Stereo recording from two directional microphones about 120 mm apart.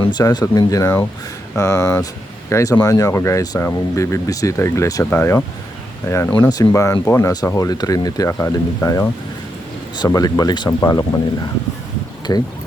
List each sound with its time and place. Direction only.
0.0 s speech: 35° left (ahead or behind)
6.4 s speech: 30° left (ahead or behind)
12.3 s speech: 25° left (ahead or behind)